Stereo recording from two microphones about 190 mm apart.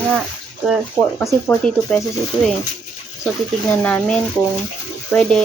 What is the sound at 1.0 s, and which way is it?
Speech, 15° right (ahead or behind).